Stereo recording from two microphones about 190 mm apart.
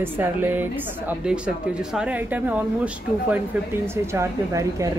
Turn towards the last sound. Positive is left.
turn(degrees=-15)  # may be behind; listen again after turning